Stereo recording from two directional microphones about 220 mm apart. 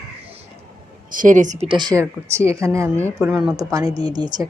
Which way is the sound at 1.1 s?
35° right (ahead or behind).